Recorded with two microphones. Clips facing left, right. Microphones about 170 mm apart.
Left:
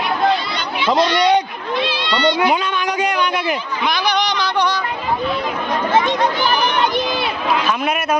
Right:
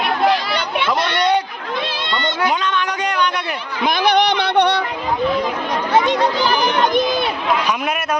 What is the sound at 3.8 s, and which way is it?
Speech, 50° right (ahead or behind).